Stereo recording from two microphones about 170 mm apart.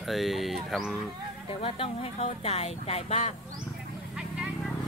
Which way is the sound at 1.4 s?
35° left (ahead or behind).